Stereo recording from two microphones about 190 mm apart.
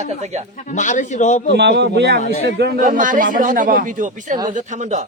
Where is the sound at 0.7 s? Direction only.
40° left (ahead or behind).